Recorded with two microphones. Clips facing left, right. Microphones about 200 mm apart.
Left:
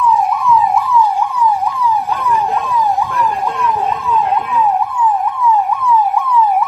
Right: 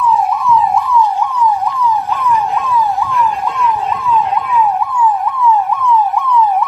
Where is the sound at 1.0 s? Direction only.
10° left (ahead or behind).